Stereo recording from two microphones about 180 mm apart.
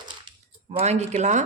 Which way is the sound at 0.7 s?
35° right (ahead or behind).